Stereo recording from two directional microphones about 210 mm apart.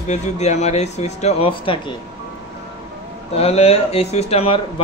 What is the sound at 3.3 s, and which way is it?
Speech, 30° left (ahead or behind).